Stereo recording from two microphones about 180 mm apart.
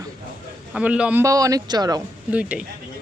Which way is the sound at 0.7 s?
5° right (ahead or behind).